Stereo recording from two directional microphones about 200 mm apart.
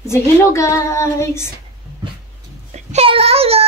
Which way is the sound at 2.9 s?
30° right (ahead or behind).